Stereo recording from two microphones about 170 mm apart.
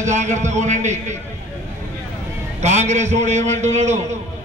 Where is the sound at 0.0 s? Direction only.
45° right (ahead or behind).